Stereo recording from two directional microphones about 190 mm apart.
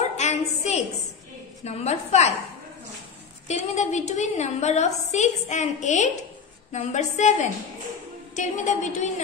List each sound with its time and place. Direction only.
0.2 s a woman's voice: 35° left (ahead or behind)
3.4 s a woman's voice: 40° left (ahead or behind)